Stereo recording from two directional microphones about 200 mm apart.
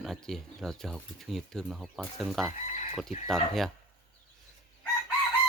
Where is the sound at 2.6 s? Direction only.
35° left (ahead or behind).